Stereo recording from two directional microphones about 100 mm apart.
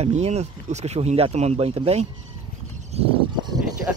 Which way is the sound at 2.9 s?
90° right.